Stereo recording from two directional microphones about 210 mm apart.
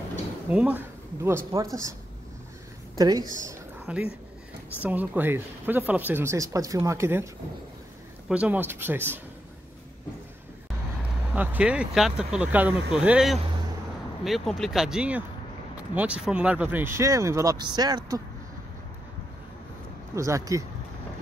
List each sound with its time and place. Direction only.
0.5 s speech: 5° right (ahead or behind)
3.0 s speech: 15° right (ahead or behind)
3.8 s speech: 5° right (ahead or behind)
8.3 s speech: 5° right (ahead or behind)
11.3 s speech: 5° right (ahead or behind)
20.2 s speech: 15° right (ahead or behind)